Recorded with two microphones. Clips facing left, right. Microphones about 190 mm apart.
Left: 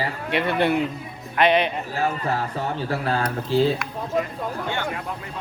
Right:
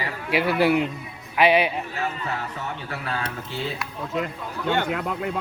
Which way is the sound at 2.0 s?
35° left (ahead or behind).